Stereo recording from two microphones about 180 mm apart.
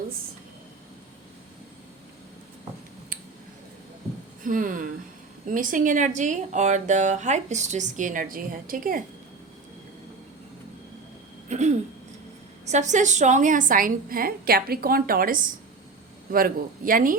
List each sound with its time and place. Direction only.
4.4 s speech: 50° right (ahead or behind)
11.4 s a sound: 40° right (ahead or behind)
12.6 s speech: 40° right (ahead or behind)